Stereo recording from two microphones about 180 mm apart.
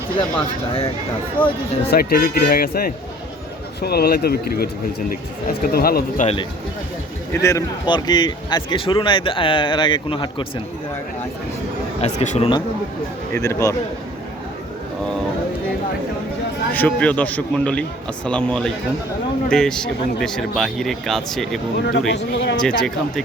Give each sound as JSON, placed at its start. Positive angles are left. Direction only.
{"t": 1.4, "sound": "a man's voice", "side_deg": 10}
{"t": 1.9, "sound": "speech", "side_deg": 55}
{"t": 7.4, "sound": "a man's voice", "side_deg": 20}
{"t": 12.2, "sound": "speech", "side_deg": 40}
{"t": 13.3, "sound": "a man's voice", "side_deg": 15}
{"t": 16.7, "sound": "a man's voice", "side_deg": 10}
{"t": 21.8, "sound": "speech", "side_deg": 70}
{"t": 22.6, "sound": "speech", "side_deg": 5}